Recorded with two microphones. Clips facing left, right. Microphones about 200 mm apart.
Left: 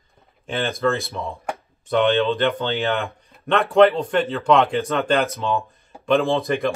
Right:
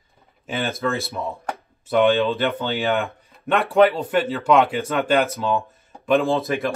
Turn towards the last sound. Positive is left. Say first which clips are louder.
# even
turn(degrees=0)  # may be behind; listen again after turning